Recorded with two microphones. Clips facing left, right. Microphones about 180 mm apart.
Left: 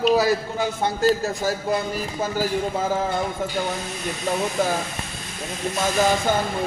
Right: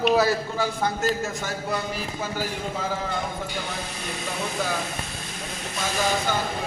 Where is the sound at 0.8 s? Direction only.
35° left (ahead or behind).